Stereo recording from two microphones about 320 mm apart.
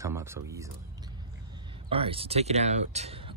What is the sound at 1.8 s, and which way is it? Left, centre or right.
Speech, centre.